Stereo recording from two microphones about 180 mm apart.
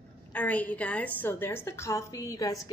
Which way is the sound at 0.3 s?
10° left (ahead or behind).